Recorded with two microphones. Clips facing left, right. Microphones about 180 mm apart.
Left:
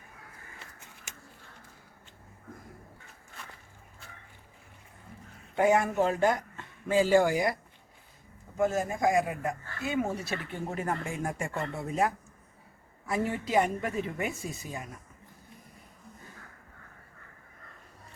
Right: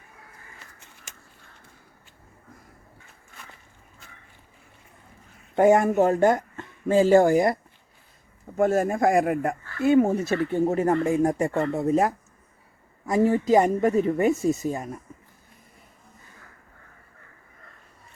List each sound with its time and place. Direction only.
5.5 s speech: 45° right (ahead or behind)